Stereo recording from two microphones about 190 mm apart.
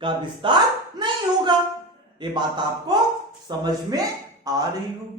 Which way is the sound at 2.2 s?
25° right (ahead or behind).